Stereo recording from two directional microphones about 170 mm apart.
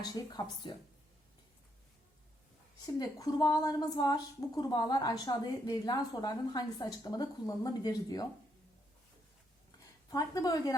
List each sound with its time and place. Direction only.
0.0 s a woman's voice: 25° left (ahead or behind)
2.8 s a woman's voice: 20° left (ahead or behind)
10.1 s a woman's voice: 20° left (ahead or behind)